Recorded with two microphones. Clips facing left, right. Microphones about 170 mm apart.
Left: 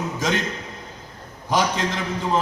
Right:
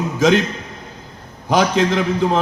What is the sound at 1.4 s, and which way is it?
Speech, 70° right (ahead or behind).